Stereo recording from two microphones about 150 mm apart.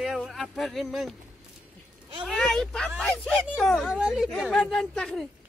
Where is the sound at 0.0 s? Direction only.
Centre (ahead or behind).